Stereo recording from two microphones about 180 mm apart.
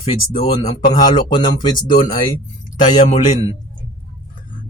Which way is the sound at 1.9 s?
50° left (ahead or behind).